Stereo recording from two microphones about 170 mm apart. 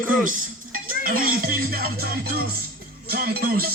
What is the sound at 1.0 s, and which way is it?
Dishes, 60° right (ahead or behind).